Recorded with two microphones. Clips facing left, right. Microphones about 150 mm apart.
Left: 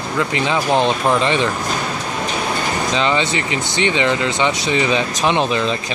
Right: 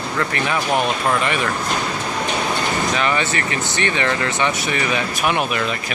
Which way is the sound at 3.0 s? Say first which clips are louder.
Left 2 dB; 20° left (ahead or behind).